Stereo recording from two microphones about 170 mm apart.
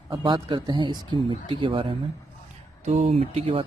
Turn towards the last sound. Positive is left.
turn(degrees=-35)  # may be behind; listen again after turning